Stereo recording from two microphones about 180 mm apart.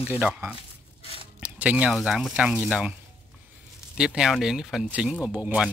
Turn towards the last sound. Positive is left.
turn(degrees=-10)  # may be behind; listen again after turning